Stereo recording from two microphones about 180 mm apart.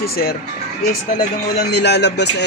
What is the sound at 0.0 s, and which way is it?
Speech, 55° left (ahead or behind).